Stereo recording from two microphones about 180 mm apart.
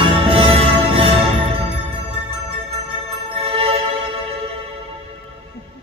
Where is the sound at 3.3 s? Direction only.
30° right (ahead or behind).